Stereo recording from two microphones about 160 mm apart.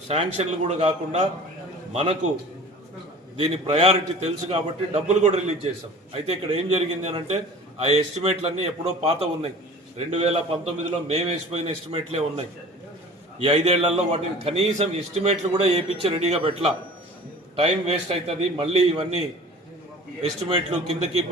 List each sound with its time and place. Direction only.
0.1 s a man's voice: 45° right (ahead or behind)
1.9 s a man's voice: 40° right (ahead or behind)
3.3 s a man's voice: 40° right (ahead or behind)
20.7 s a man's voice: 40° right (ahead or behind)